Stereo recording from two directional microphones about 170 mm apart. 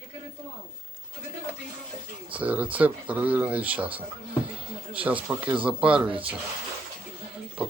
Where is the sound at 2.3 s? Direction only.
10° right (ahead or behind).